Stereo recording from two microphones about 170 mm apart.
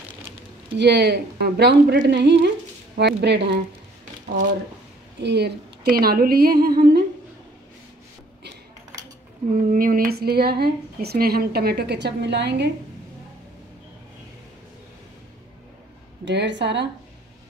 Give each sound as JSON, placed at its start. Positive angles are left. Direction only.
{"t": 0.7, "sound": "speech", "side_deg": -80}
{"t": 5.2, "sound": "speech", "side_deg": -80}
{"t": 9.7, "sound": "a woman's voice", "side_deg": -55}
{"t": 16.3, "sound": "a woman's voice", "side_deg": -90}